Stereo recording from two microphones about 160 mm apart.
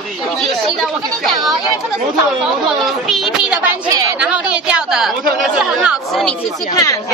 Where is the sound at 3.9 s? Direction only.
20° right (ahead or behind).